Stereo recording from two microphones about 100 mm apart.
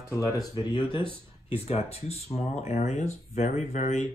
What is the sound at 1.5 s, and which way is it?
Speech, 90° left.